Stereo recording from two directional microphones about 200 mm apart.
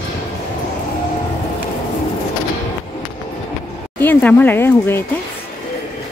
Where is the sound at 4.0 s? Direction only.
10° left (ahead or behind).